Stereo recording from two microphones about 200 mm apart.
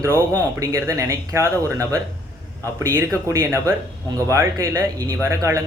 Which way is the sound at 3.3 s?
15° right (ahead or behind).